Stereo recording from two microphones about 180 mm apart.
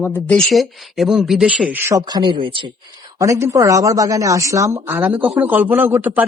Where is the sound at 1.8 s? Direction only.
15° right (ahead or behind).